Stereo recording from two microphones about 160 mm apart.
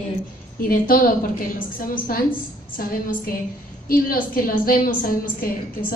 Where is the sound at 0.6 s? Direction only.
65° left (ahead or behind).